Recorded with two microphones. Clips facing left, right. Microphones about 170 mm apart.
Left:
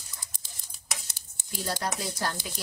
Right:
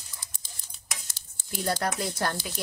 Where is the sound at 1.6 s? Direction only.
55° right (ahead or behind).